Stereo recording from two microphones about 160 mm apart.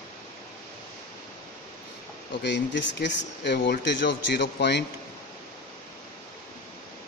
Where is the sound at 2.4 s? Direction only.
90° left.